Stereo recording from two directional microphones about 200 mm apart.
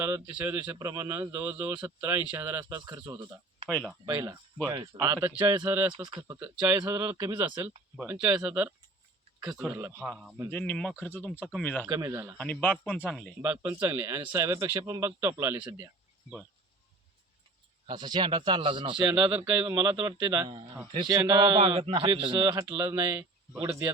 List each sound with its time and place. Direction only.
0.0 s speech: 15° right (ahead or behind)
3.7 s speech: 5° left (ahead or behind)
4.0 s speech: 20° right (ahead or behind); by 11.9 s 5° left (ahead or behind)
11.9 s speech: 15° right (ahead or behind)
12.4 s speech: 5° left (ahead or behind)
13.4 s speech: 10° right (ahead or behind)
17.8 s speech: 20° right (ahead or behind)